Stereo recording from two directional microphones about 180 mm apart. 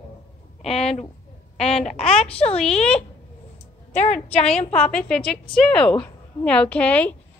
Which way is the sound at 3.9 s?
40° left (ahead or behind).